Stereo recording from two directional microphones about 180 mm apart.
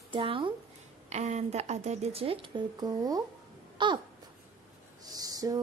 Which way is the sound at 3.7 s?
25° right (ahead or behind).